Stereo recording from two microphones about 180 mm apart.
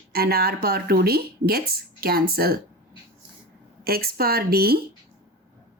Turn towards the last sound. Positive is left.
turn(degrees=-60)  # may be behind; listen again after turning